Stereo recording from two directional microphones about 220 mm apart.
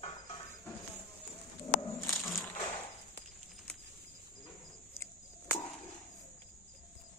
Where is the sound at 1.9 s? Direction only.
Centre (ahead or behind).